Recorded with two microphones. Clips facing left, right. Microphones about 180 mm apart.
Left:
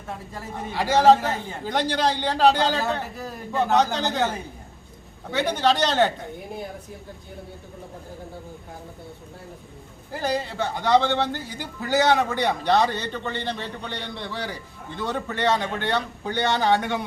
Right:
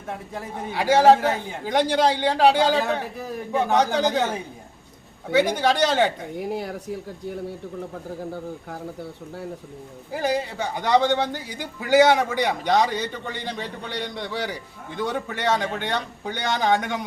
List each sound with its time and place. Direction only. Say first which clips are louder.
0.7 s a man's voice: right 1 dB; 10° right (ahead or behind)
6.4 s speech: right 6 dB; 80° right
10.1 s a man's voice: right 2 dB; 15° right (ahead or behind)
15.0 s a man's voice: left 1 dB; 10° right (ahead or behind)